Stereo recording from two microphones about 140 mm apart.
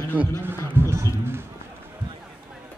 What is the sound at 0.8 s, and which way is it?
Speech, 20° right (ahead or behind).